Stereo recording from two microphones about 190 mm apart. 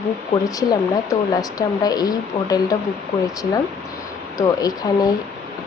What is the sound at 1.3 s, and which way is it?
Speech, 20° left (ahead or behind).